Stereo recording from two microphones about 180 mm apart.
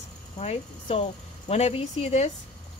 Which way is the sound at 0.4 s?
35° left (ahead or behind).